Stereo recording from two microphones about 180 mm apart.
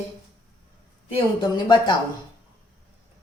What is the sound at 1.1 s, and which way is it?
Speech, 25° left (ahead or behind).